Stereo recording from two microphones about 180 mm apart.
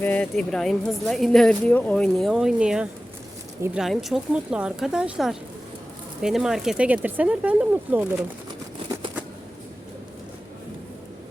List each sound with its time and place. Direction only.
0.0 s speech: 10° left (ahead or behind); by 8.0 s 10° right (ahead or behind)